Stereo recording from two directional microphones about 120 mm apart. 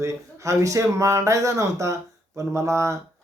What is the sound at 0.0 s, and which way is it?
Speech, 25° right (ahead or behind).